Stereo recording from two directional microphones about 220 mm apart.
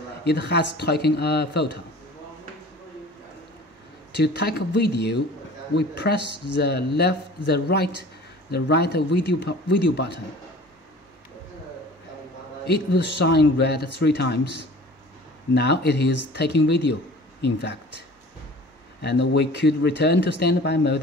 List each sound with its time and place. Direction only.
0.2 s speech: 50° left (ahead or behind)
4.2 s speech: 50° left (ahead or behind)
12.6 s speech: 50° left (ahead or behind)
18.9 s speech: 50° left (ahead or behind)